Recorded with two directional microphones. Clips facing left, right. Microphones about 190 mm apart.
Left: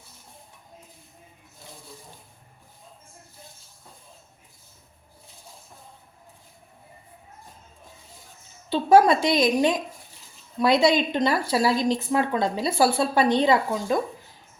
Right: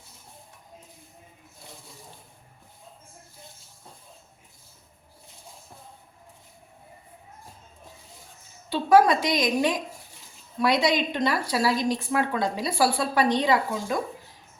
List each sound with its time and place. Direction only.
8.7 s a woman's voice: 25° left (ahead or behind)